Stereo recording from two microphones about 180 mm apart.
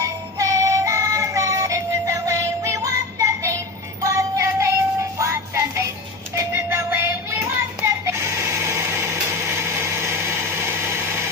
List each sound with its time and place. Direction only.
0.0 s music: 15° right (ahead or behind)
6.3 s child singing: 15° right (ahead or behind)